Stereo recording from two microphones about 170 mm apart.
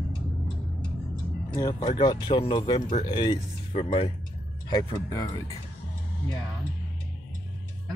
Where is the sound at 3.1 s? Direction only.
25° left (ahead or behind).